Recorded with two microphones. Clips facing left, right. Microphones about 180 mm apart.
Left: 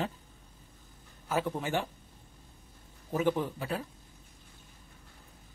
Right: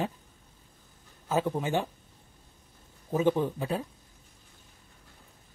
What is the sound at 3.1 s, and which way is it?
Speech, 20° right (ahead or behind).